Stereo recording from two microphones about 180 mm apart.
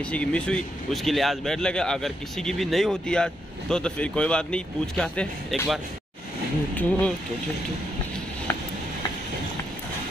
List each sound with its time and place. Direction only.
0.1 s speech: 5° left (ahead or behind)